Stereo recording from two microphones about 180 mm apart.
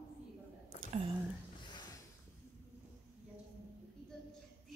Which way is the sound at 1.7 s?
25° left (ahead or behind).